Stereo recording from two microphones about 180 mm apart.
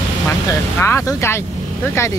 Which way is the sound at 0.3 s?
15° left (ahead or behind).